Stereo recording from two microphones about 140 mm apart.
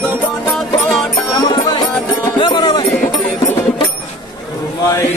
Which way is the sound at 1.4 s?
30° left (ahead or behind).